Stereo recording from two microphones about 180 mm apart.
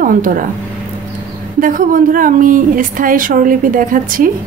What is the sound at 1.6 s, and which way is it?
Speech, 50° right (ahead or behind).